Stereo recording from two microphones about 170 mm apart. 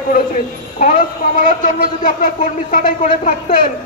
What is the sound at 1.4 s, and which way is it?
A man's voice, 50° left (ahead or behind).